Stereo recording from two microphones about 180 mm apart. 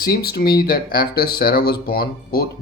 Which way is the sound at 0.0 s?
60° left (ahead or behind).